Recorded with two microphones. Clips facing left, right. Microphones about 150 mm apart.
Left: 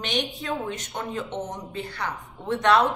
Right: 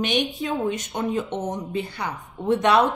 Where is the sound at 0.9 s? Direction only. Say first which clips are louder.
Right 2 dB; 20° right (ahead or behind).